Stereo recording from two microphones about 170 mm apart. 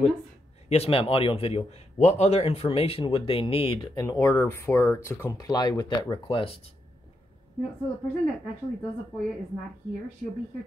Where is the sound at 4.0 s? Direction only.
20° left (ahead or behind).